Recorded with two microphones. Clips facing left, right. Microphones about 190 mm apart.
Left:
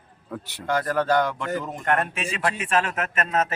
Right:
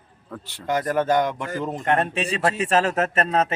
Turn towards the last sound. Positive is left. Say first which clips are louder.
# right 3 dB
turn(degrees=-30)  # may be behind; listen again after turning